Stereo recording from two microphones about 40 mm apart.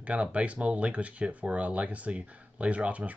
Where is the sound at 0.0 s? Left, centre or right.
Right.